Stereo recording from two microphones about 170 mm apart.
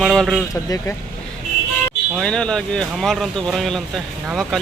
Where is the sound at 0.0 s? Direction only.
Centre (ahead or behind).